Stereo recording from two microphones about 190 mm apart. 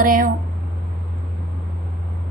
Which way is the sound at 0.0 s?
45° right (ahead or behind).